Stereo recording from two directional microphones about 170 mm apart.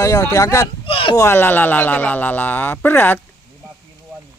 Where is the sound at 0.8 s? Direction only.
30° left (ahead or behind).